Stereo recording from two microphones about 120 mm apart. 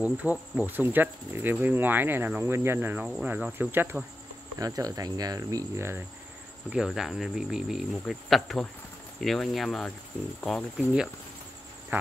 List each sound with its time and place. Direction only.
0.0 s speech: 10° right (ahead or behind)
4.6 s speech: 30° right (ahead or behind)
6.7 s speech: 5° right (ahead or behind)
11.9 s speech: 15° right (ahead or behind)